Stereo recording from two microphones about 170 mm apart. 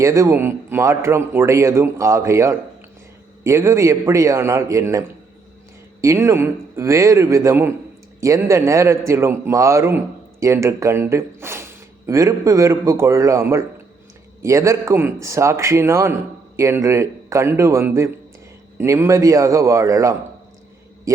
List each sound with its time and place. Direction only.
0.0 s speech: 15° right (ahead or behind)